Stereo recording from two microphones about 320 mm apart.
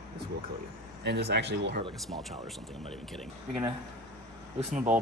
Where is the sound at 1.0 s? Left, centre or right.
Right.